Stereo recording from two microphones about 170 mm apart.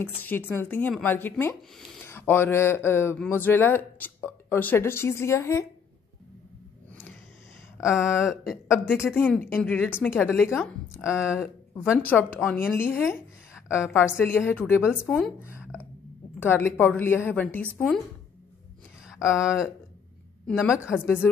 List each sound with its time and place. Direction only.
0.2 s speech: 10° left (ahead or behind)
7.8 s a sound: 5° right (ahead or behind)
8.2 s speech: 5° right (ahead or behind)
8.9 s speech: 15° left (ahead or behind)
11.8 s a woman's voice: 5° right (ahead or behind)
12.7 s speech: 10° left (ahead or behind)
14.2 s speech: 10° left (ahead or behind)
16.3 s speech: 10° left (ahead or behind)
19.3 s speech: 5° right (ahead or behind)